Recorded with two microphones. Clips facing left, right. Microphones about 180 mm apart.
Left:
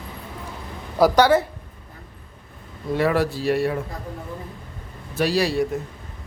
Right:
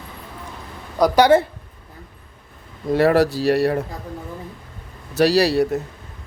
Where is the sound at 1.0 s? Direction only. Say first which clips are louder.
Left 1 dB; 5° left (ahead or behind).